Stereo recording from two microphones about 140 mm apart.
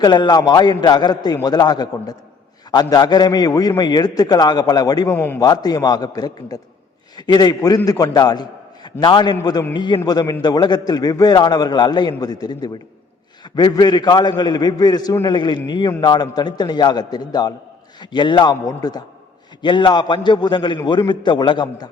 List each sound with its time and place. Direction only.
0.0 s a man's voice: 30° left (ahead or behind)
5.0 s a man's voice: 15° left (ahead or behind)
5.4 s a man's voice: 30° left (ahead or behind)